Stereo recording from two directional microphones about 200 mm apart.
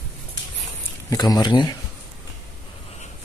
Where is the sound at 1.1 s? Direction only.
20° left (ahead or behind).